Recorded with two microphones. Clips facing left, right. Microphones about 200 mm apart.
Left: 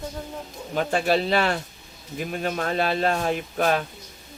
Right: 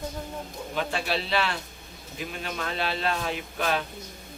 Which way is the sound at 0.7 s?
45° left (ahead or behind).